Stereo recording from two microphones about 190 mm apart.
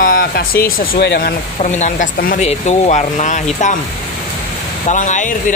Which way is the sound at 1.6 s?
40° left (ahead or behind).